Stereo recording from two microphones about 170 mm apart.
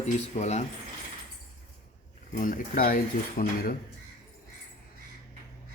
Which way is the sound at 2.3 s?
50° left (ahead or behind).